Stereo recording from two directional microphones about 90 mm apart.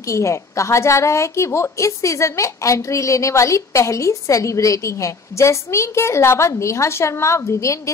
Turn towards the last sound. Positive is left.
turn(degrees=35)  # may be behind; listen again after turning